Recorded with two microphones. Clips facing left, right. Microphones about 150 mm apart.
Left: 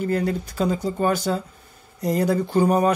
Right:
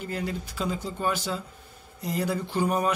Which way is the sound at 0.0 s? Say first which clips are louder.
Left 9 dB; 45° left (ahead or behind).